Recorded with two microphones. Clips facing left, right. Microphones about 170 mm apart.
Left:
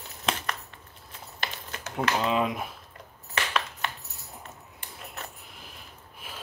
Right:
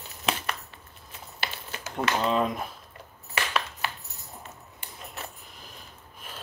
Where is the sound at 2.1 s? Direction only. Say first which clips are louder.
Right 1 dB; 5° left (ahead or behind).